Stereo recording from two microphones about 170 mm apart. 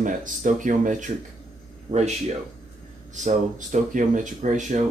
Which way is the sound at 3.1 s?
45° right (ahead or behind).